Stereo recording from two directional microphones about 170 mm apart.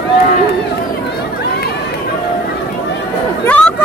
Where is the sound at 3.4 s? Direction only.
10° left (ahead or behind).